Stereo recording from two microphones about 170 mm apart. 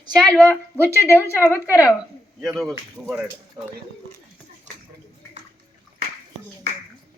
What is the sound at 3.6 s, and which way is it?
Speech, 25° right (ahead or behind).